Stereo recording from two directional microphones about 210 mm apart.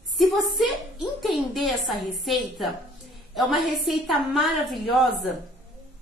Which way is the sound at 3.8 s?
Centre (ahead or behind).